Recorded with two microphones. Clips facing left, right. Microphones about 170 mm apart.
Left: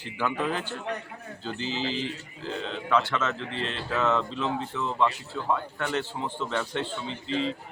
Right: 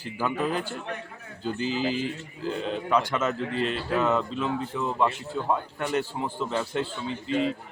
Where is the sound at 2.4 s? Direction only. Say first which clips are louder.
Right 4 dB; 10° right (ahead or behind).